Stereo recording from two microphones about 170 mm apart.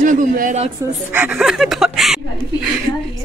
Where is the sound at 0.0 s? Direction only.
50° right (ahead or behind).